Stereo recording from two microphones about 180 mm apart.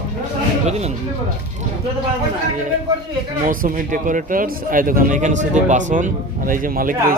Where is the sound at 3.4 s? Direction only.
50° right (ahead or behind).